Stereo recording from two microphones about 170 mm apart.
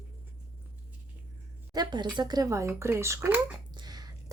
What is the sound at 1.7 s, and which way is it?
A woman's voice, 25° right (ahead or behind).